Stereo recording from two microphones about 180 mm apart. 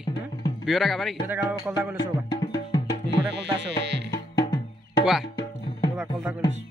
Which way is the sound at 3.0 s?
75° right (ahead or behind).